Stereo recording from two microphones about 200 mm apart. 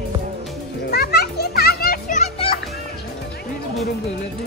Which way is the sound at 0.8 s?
50° left (ahead or behind).